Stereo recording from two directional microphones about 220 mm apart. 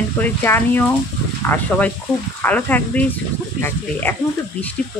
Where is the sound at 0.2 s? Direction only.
10° left (ahead or behind).